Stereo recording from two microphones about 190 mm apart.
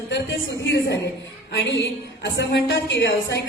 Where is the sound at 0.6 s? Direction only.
65° left (ahead or behind).